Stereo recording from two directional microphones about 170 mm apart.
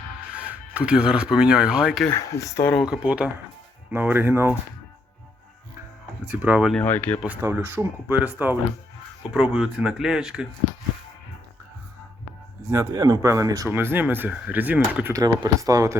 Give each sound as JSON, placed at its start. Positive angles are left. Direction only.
{"t": 0.3, "sound": "speech", "side_deg": -5}
{"t": 2.0, "sound": "speech", "side_deg": 15}
{"t": 2.7, "sound": "speech", "side_deg": -5}
{"t": 6.2, "sound": "speech", "side_deg": -10}
{"t": 6.8, "sound": "speech", "side_deg": 10}
{"t": 7.3, "sound": "speech", "side_deg": -15}
{"t": 12.7, "sound": "speech", "side_deg": -20}